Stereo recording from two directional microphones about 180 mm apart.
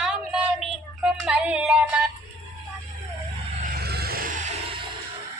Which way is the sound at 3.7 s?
60° right (ahead or behind).